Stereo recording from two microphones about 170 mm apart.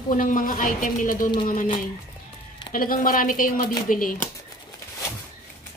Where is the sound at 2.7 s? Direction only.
55° left (ahead or behind).